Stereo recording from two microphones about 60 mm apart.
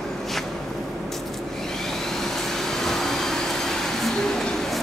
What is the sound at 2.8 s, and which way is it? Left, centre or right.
Vacuum cleaner, centre.